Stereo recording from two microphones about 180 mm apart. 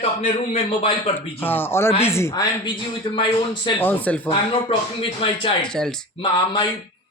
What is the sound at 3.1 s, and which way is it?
Speech, 25° left (ahead or behind).